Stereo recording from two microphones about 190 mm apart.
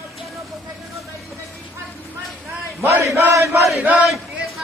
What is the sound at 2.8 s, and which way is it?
Speech, 15° right (ahead or behind).